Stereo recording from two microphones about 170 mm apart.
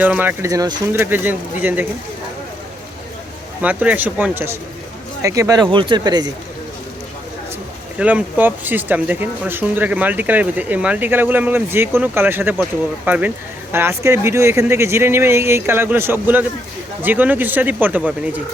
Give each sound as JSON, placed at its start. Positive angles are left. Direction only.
{"t": 0.0, "sound": "speech", "side_deg": -10}
{"t": 3.6, "sound": "speech", "side_deg": -10}
{"t": 7.9, "sound": "speech", "side_deg": -10}